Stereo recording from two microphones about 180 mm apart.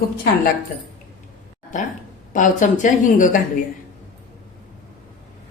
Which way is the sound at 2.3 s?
45° left (ahead or behind).